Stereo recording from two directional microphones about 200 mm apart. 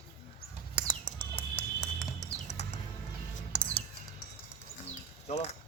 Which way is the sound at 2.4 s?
35° left (ahead or behind).